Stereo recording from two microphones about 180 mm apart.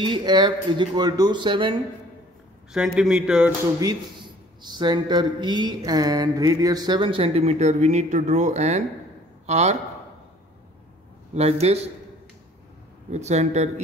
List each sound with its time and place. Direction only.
0.0 s speech: 25° right (ahead or behind)
2.7 s speech: 5° right (ahead or behind)
3.8 s speech: 25° right (ahead or behind)
11.3 s speech: 35° right (ahead or behind)
13.1 s speech: 40° right (ahead or behind)